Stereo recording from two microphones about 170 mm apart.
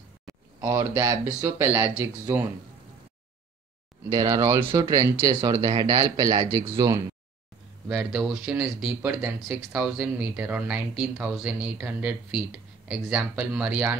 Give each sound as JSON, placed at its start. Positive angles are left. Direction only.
{"t": 0.6, "sound": "speech", "side_deg": -20}
{"t": 4.1, "sound": "speech", "side_deg": -20}
{"t": 7.9, "sound": "speech", "side_deg": -5}